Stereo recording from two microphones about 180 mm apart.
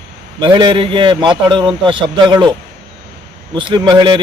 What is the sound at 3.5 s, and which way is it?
Speech, 25° right (ahead or behind).